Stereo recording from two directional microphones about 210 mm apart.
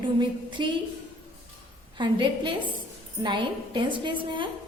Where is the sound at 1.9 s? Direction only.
20° right (ahead or behind).